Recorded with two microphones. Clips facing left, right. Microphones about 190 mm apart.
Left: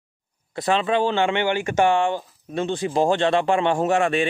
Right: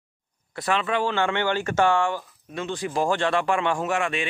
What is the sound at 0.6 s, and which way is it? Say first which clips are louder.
Speech: left 4 dB; 25° left (ahead or behind).